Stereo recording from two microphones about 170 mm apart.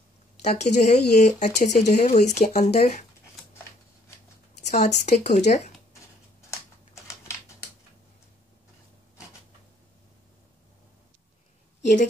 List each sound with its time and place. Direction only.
0.4 s speech: 45° left (ahead or behind)
4.6 s speech: 45° left (ahead or behind)
7.0 s typing: 15° left (ahead or behind)
11.8 s a woman's voice: 45° left (ahead or behind)